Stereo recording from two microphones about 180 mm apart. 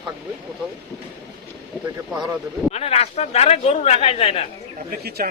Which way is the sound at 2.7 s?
35° left (ahead or behind).